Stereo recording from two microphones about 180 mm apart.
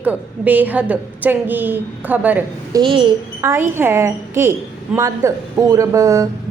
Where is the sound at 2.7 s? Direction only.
30° right (ahead or behind).